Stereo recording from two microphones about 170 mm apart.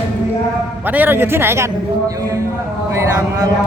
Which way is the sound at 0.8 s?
10° right (ahead or behind).